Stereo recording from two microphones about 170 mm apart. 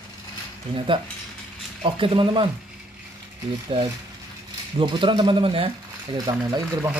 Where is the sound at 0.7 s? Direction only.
30° right (ahead or behind).